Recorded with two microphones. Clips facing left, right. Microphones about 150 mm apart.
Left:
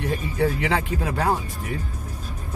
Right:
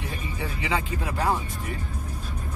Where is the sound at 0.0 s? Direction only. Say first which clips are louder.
Left 10 dB; 70° left (ahead or behind).